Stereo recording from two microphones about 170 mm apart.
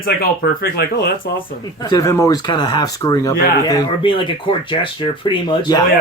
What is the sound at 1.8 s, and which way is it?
Speech, 20° left (ahead or behind).